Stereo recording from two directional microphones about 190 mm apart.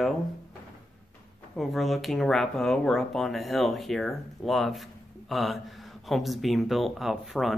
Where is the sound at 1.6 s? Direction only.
Centre (ahead or behind).